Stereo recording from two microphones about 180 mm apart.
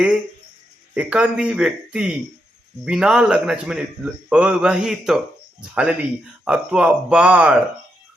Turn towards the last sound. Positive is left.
turn(degrees=-5)  # may be behind; listen again after turning